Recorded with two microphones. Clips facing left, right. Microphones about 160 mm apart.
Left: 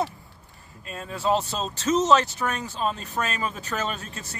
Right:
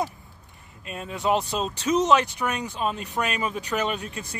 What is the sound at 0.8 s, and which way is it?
Speech, 15° right (ahead or behind).